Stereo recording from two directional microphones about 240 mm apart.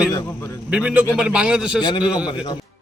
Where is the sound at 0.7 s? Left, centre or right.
Centre.